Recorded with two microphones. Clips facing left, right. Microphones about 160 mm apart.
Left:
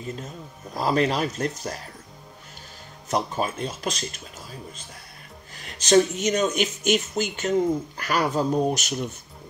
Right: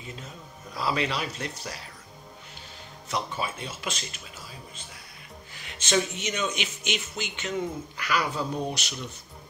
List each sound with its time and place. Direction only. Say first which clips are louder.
0.0 s a man's voice: left 7 dB; 45° left (ahead or behind)
3.1 s speech: left 6 dB; 45° left (ahead or behind)
5.6 s speech: left 8 dB; 40° left (ahead or behind)